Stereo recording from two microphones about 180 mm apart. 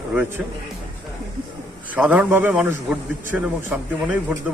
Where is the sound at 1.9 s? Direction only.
5° right (ahead or behind).